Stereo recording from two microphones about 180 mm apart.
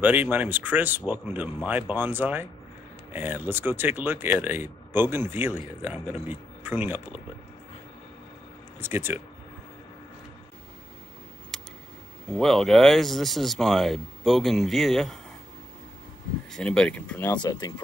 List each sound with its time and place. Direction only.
0.0 s speech: 10° right (ahead or behind)
8.7 s speech: 10° right (ahead or behind)
11.5 s a sound: centre (ahead or behind)
12.3 s speech: centre (ahead or behind)
16.5 s speech: 5° left (ahead or behind)
17.3 s speech: 20° left (ahead or behind)